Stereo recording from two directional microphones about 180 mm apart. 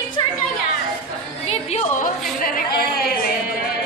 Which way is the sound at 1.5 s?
35° left (ahead or behind).